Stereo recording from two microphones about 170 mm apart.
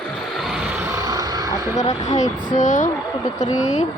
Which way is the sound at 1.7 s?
45° left (ahead or behind).